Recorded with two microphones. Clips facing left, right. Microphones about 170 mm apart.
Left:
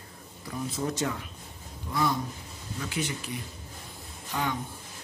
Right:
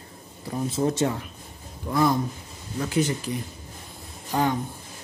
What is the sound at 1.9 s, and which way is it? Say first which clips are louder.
Speech: right 6 dB; 50° right (ahead or behind).